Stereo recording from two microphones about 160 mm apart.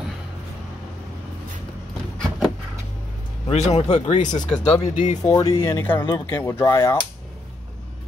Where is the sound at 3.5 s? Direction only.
45° left (ahead or behind).